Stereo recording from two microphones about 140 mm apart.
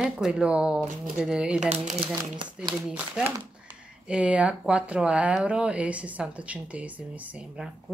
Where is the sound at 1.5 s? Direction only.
55° right (ahead or behind).